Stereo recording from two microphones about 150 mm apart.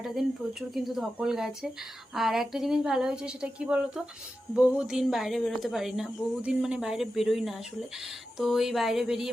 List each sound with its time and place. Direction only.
0.0 s a woman's voice: centre (ahead or behind)